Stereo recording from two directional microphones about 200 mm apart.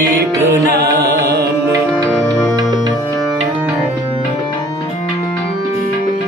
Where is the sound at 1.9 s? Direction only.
5° left (ahead or behind).